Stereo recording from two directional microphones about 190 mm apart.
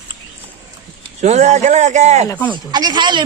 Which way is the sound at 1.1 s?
35° right (ahead or behind).